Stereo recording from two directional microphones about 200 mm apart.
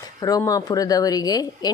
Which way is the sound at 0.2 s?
20° left (ahead or behind).